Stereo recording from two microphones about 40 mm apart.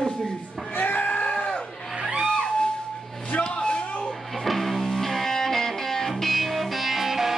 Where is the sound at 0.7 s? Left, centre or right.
Left.